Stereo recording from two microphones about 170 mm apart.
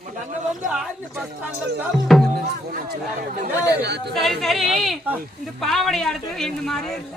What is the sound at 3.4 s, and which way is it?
Speech, 80° right.